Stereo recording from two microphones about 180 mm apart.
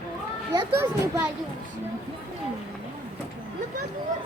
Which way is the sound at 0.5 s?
15° right (ahead or behind).